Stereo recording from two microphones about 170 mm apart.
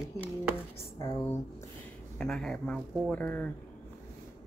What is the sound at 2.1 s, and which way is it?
Speech, 5° left (ahead or behind).